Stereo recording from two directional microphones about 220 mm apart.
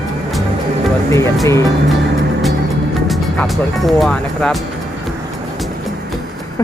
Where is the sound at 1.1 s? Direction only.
10° left (ahead or behind).